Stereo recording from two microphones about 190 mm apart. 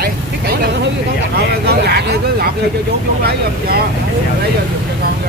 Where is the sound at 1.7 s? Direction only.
60° right (ahead or behind).